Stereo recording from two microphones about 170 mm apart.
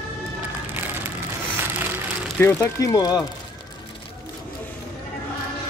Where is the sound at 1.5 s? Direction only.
10° right (ahead or behind).